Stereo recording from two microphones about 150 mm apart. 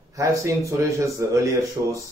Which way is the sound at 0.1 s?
20° right (ahead or behind).